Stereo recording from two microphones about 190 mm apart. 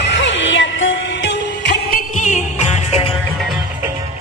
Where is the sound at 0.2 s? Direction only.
80° left.